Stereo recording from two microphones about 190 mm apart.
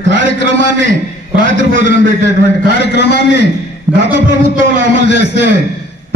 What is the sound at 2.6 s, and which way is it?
Speech, 60° left (ahead or behind).